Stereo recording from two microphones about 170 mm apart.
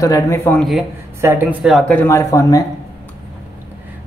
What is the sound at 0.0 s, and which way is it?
Speech, 20° left (ahead or behind).